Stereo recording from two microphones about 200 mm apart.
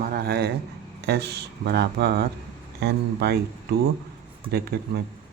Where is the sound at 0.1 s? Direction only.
50° right (ahead or behind).